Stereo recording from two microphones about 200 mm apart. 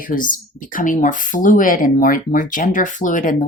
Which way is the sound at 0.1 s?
40° left (ahead or behind).